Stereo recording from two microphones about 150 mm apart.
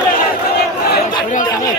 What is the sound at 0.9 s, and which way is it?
Chatter, 65° left (ahead or behind).